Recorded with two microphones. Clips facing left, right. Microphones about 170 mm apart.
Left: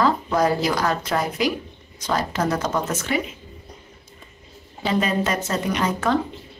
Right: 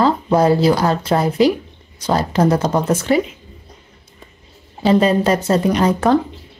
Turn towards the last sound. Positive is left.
turn(degrees=-35)  # may be behind; listen again after turning